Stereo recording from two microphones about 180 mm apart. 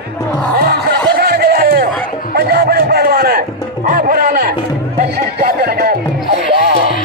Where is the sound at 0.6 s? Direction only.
55° right (ahead or behind).